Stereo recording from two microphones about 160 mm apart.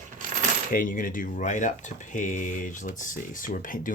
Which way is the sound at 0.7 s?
55° left (ahead or behind).